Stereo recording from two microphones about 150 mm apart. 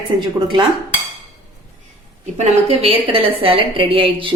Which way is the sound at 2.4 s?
45° right (ahead or behind).